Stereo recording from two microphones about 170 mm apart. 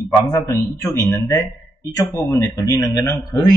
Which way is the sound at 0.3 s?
15° left (ahead or behind).